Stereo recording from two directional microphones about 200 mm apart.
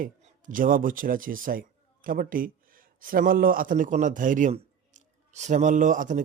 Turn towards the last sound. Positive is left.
turn(degrees=-40)  # may be behind; listen again after turning